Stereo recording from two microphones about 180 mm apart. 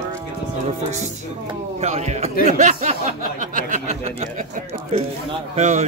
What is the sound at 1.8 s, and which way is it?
A man's voice, 40° right (ahead or behind).